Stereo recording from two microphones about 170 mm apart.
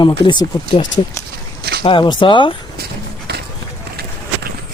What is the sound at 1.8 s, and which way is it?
Speech, 30° left (ahead or behind).